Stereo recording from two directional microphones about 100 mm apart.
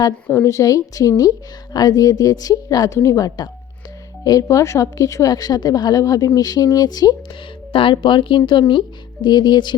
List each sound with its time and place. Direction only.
0.4 s speech: 35° left (ahead or behind)
7.7 s speech: 60° left (ahead or behind)